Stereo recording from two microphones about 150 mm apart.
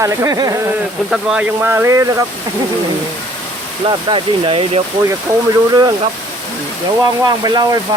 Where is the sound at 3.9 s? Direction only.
35° right (ahead or behind).